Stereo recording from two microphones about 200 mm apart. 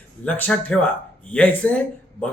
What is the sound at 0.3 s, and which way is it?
A man's voice, 10° left (ahead or behind).